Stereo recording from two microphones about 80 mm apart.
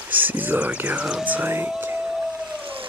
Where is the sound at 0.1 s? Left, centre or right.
Right.